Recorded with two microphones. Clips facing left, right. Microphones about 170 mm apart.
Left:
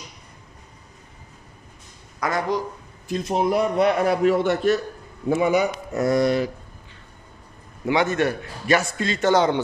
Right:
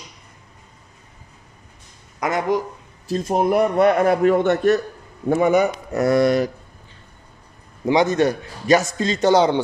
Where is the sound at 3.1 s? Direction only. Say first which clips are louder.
Right 3 dB; 50° right (ahead or behind); by 6.3 s 70° right (ahead or behind).